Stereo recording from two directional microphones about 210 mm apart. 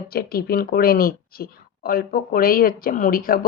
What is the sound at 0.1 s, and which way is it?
Speech, 45° left (ahead or behind).